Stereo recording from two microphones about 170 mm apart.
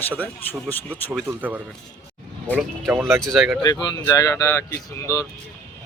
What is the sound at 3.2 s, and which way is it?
Speech, centre (ahead or behind).